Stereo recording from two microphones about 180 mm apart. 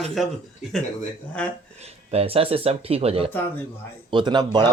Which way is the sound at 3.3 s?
10° left (ahead or behind).